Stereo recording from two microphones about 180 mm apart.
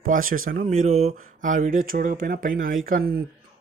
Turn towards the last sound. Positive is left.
turn(degrees=-50)  # may be behind; listen again after turning